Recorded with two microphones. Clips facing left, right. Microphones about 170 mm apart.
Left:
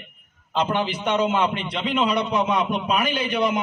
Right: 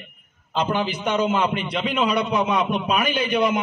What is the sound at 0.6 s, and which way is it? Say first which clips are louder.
A man's voice: right 1 dB; 10° right (ahead or behind).